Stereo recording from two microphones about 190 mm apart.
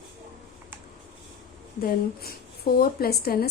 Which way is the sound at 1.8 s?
50° left (ahead or behind).